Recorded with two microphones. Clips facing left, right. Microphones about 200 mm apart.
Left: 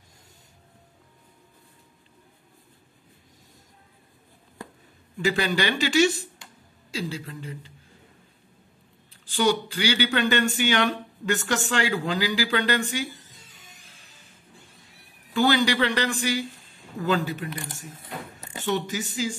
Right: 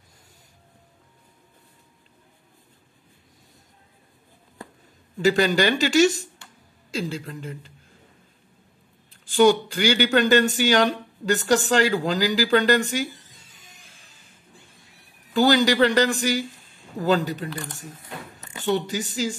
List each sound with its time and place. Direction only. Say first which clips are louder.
5.2 s speech: right 5 dB; 40° right (ahead or behind)
9.2 s speech: right 6 dB; 45° right (ahead or behind)
15.3 s speech: right 3 dB; 40° right (ahead or behind)
18.7 s speech: right 3 dB; 35° right (ahead or behind)